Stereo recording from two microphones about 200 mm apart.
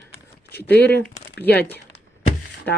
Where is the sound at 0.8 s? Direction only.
55° left (ahead or behind).